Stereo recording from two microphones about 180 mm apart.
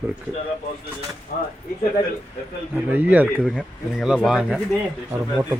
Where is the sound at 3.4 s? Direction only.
Centre (ahead or behind).